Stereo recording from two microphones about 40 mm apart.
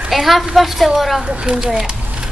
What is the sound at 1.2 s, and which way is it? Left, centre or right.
Speech, right.